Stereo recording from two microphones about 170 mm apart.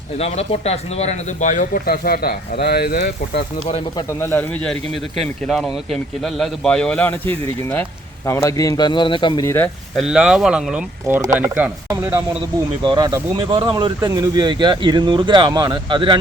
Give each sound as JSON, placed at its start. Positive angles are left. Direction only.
{"t": 0.2, "sound": "speech", "side_deg": 35}
{"t": 3.7, "sound": "speech", "side_deg": 35}
{"t": 4.2, "sound": "a man's voice", "side_deg": 10}
{"t": 9.9, "sound": "a man's voice", "side_deg": 0}
{"t": 12.8, "sound": "speech", "side_deg": -25}